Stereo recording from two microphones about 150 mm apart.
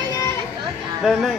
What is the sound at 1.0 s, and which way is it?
Speech, centre (ahead or behind).